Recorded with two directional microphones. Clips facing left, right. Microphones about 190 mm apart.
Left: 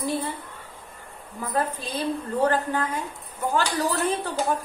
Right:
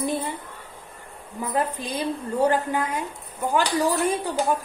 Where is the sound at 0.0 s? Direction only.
20° right (ahead or behind).